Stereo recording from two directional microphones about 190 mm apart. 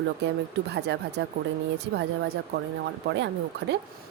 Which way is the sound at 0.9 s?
65° right (ahead or behind).